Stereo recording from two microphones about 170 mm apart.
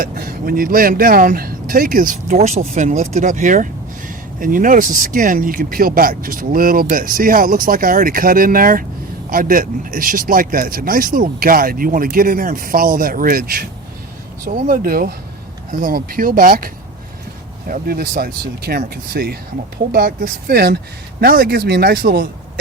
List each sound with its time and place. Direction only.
0.0 s speech: 60° right (ahead or behind)